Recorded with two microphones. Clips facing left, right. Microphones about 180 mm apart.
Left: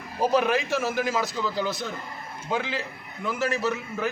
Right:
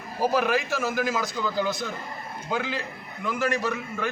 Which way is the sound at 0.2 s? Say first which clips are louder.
Left 1 dB; centre (ahead or behind).